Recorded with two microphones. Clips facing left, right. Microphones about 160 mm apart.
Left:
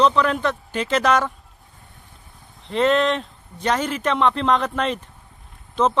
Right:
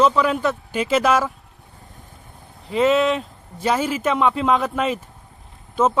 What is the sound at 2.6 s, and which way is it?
Speech, 5° right (ahead or behind).